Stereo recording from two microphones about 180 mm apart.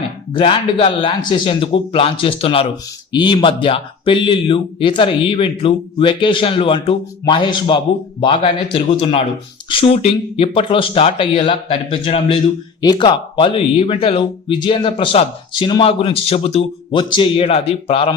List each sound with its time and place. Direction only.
0.3 s speech: 30° left (ahead or behind)